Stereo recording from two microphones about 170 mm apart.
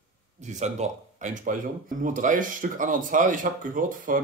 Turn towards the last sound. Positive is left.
turn(degrees=-50)  # may be behind; listen again after turning